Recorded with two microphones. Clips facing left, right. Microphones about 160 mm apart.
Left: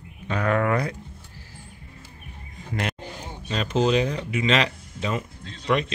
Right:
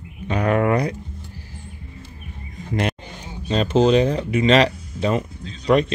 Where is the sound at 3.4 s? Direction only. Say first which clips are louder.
Right 6 dB; 30° right (ahead or behind).